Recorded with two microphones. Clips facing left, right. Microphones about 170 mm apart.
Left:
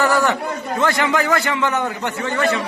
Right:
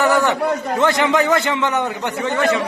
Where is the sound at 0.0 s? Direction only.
20° right (ahead or behind).